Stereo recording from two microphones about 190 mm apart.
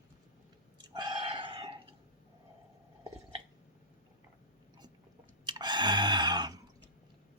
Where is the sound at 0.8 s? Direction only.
20° right (ahead or behind).